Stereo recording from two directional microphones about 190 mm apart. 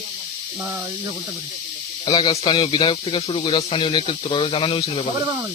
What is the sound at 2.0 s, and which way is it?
Speech, 25° left (ahead or behind).